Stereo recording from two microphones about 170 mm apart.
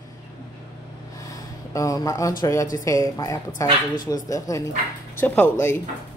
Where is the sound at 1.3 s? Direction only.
20° left (ahead or behind).